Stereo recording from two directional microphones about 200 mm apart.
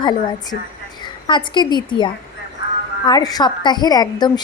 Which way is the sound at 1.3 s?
25° left (ahead or behind).